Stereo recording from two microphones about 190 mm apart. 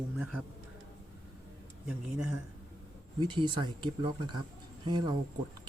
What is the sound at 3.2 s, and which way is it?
Speech, 25° right (ahead or behind).